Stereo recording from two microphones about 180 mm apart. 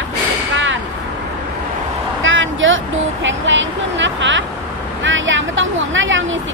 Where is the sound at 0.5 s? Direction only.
90° right.